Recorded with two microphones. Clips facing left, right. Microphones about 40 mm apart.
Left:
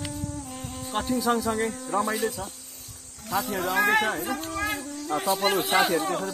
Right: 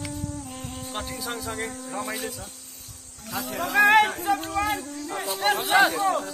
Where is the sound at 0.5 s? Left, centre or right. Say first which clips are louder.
Even; centre.